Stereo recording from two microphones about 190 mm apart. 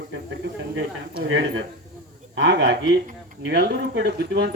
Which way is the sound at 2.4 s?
70° right (ahead or behind).